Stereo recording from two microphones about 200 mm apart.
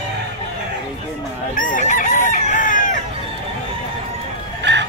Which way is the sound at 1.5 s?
40° left (ahead or behind).